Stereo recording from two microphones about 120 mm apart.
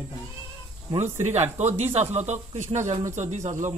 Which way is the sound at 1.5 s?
70° right (ahead or behind).